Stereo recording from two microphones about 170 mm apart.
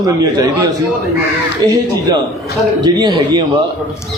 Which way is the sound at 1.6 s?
25° right (ahead or behind).